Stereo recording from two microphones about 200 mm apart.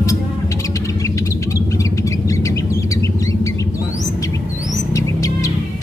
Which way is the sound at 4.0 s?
15° left (ahead or behind).